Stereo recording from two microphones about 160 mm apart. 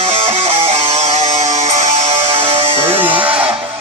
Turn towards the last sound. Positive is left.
turn(degrees=-10)  # may be behind; listen again after turning